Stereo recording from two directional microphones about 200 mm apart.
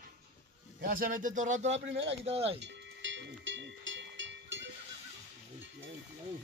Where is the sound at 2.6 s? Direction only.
65° right (ahead or behind).